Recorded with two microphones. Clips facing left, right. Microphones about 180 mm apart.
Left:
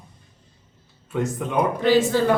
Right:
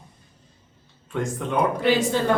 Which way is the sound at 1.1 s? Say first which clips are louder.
Left 2 dB; 5° left (ahead or behind).